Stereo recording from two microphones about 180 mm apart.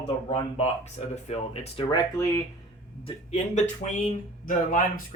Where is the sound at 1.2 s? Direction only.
35° left (ahead or behind).